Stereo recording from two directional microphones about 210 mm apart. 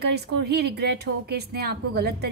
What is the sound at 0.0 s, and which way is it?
A woman's voice, 50° right (ahead or behind).